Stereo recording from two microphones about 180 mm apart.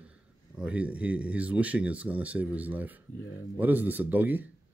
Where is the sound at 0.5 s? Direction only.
5° right (ahead or behind).